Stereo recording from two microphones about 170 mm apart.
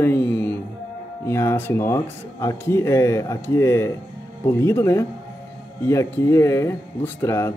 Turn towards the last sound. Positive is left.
turn(degrees=15)  # may be behind; listen again after turning